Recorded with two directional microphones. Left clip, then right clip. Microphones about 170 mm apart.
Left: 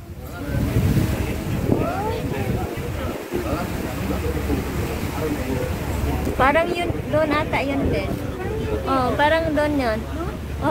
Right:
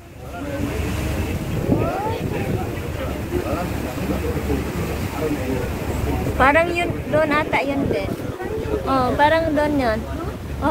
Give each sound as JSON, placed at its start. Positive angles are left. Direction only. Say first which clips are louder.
{"t": 6.3, "sound": "speech", "louder": "right 2 dB", "side_deg": 0}
{"t": 8.8, "sound": "speech", "louder": "right 2 dB", "side_deg": -15}